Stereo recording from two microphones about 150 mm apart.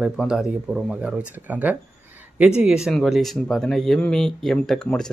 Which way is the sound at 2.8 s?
Centre (ahead or behind).